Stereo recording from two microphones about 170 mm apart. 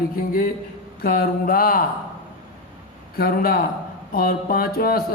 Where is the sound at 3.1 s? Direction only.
60° left (ahead or behind).